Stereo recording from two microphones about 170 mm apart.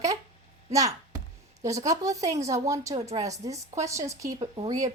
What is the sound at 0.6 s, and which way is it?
A woman's voice, 20° right (ahead or behind).